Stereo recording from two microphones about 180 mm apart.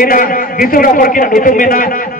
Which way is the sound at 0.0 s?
50° left (ahead or behind).